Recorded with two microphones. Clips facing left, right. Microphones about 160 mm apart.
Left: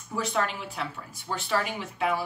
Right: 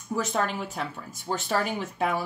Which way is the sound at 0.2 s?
45° right (ahead or behind).